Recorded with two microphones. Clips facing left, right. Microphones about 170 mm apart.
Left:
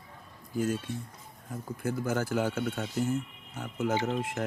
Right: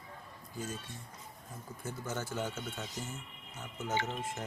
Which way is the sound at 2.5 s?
60° left (ahead or behind).